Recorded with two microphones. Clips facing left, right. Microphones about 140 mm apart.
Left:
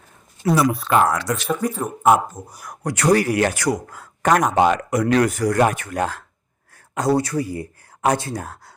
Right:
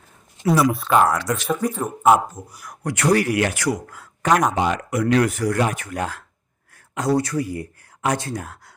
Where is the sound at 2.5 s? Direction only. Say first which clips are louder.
Left 1 dB; 45° left (ahead or behind).